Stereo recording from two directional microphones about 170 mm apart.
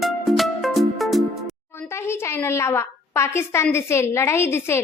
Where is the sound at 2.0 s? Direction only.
15° left (ahead or behind).